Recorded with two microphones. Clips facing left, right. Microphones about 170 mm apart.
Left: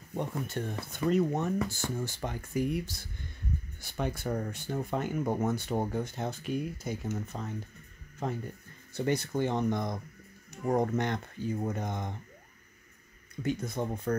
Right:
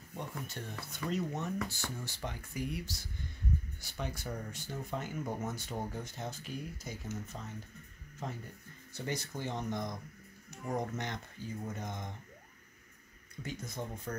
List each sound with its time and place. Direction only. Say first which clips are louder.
0.1 s speech: left 9 dB; 55° left (ahead or behind)
8.9 s speech: left 9 dB; 60° left (ahead or behind)
13.4 s speech: left 9 dB; 60° left (ahead or behind)